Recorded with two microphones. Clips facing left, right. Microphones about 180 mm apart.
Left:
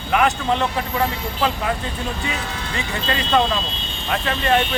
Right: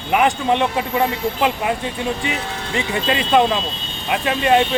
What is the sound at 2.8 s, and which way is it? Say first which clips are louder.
Speech: right 5 dB; 15° right (ahead or behind).